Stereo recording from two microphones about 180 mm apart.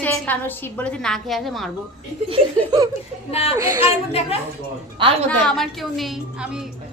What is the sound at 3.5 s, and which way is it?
Speech, 15° right (ahead or behind).